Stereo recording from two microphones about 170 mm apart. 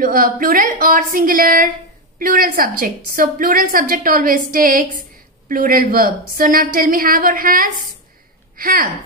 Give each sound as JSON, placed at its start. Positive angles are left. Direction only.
{"t": 0.0, "sound": "a woman's voice", "side_deg": -55}